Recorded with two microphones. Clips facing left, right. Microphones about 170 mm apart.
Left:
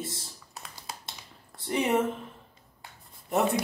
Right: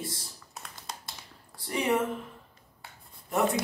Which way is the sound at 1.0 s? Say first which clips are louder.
Even; 25° left (ahead or behind).